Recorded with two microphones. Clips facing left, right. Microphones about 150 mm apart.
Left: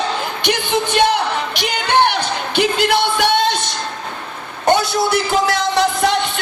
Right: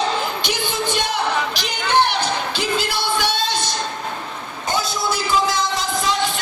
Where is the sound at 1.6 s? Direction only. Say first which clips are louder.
Left 5 dB; 60° left (ahead or behind).